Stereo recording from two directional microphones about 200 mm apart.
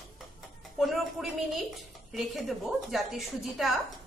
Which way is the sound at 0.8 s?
Centre (ahead or behind).